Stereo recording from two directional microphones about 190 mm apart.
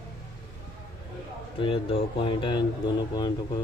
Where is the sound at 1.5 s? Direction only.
25° left (ahead or behind).